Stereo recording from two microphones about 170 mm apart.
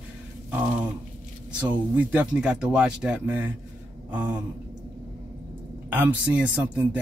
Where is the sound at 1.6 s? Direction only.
10° right (ahead or behind).